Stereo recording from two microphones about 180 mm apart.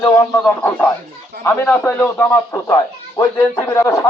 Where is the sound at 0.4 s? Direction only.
5° left (ahead or behind).